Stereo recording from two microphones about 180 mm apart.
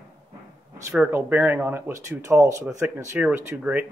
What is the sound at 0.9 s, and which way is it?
Speech, 10° right (ahead or behind).